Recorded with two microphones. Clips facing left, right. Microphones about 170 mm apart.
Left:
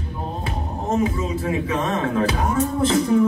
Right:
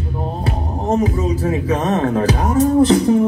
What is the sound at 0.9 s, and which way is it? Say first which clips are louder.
Music: right 4 dB; 40° right (ahead or behind).